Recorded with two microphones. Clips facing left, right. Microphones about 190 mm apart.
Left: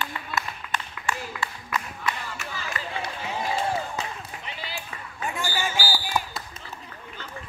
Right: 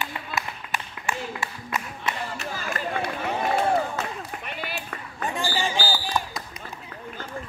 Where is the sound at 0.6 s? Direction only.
25° right (ahead or behind).